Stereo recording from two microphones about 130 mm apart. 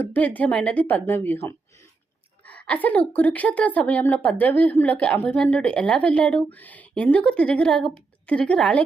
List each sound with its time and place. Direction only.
0.0 s a woman's voice: 15° left (ahead or behind)